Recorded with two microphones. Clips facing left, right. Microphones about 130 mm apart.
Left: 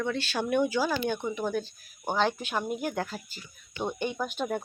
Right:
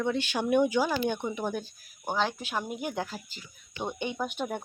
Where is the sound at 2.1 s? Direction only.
Centre (ahead or behind).